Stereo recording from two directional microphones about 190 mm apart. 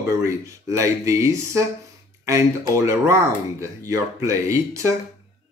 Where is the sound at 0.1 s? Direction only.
15° right (ahead or behind).